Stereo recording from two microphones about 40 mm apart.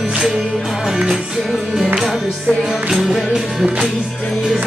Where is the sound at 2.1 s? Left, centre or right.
Centre.